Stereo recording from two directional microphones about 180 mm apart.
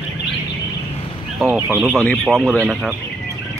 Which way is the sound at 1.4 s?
10° right (ahead or behind).